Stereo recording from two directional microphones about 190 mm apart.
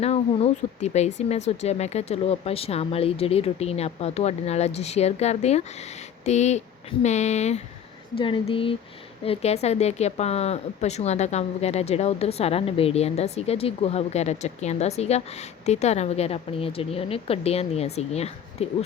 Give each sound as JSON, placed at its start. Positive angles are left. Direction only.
{"t": 0.0, "sound": "speech", "side_deg": 30}